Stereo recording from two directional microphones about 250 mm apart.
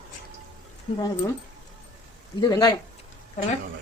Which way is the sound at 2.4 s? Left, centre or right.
Centre.